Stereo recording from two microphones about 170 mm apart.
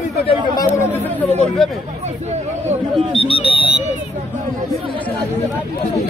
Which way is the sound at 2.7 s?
30° right (ahead or behind).